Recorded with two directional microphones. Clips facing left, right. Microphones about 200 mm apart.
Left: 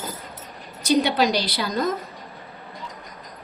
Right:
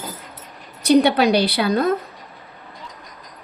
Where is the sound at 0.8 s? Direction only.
65° right (ahead or behind).